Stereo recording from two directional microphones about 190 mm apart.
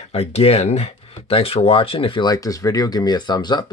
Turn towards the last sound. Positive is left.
turn(degrees=20)  # may be behind; listen again after turning